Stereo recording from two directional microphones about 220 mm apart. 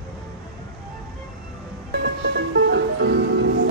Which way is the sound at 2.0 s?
55° right (ahead or behind).